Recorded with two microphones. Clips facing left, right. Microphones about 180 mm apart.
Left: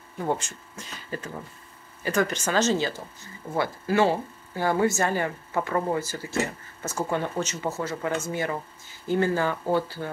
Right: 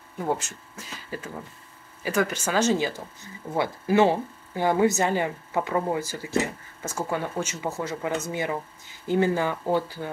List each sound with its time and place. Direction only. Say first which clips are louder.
0.2 s speech: even; 5° right (ahead or behind)